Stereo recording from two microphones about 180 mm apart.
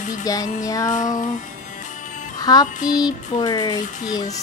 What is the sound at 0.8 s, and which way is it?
Music, 45° left (ahead or behind).